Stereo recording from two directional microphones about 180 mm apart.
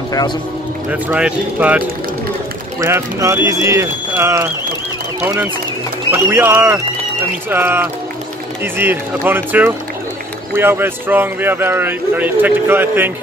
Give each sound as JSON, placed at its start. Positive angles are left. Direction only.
{"t": 0.8, "sound": "speech", "side_deg": -5}